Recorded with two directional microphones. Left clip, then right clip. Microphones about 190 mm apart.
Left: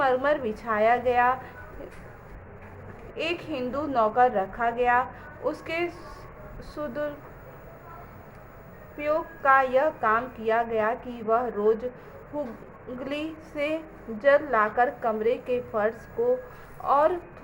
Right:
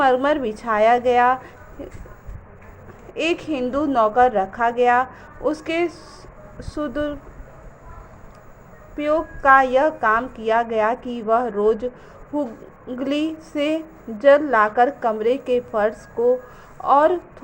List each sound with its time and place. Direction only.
0.0 s a woman's voice: 40° right (ahead or behind)
3.2 s a woman's voice: 40° right (ahead or behind)
9.0 s a woman's voice: 35° right (ahead or behind)
13.0 s a woman's voice: 40° right (ahead or behind)